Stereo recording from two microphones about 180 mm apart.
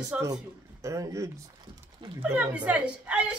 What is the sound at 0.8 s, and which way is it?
A woman's voice, 15° right (ahead or behind).